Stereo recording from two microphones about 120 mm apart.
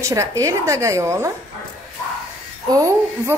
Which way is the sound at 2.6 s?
25° right (ahead or behind).